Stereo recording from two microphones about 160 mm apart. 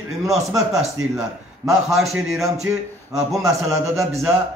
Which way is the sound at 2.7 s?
15° right (ahead or behind).